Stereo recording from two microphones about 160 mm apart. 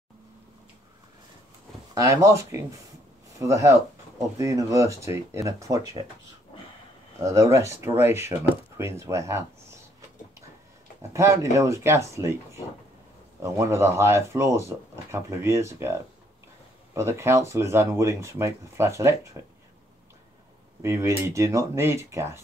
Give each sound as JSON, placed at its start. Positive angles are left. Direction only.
{"t": 2.0, "sound": "speech", "side_deg": -20}
{"t": 7.2, "sound": "speech", "side_deg": -20}
{"t": 11.0, "sound": "speech", "side_deg": -20}
{"t": 13.4, "sound": "speech", "side_deg": -15}
{"t": 20.8, "sound": "speech", "side_deg": -15}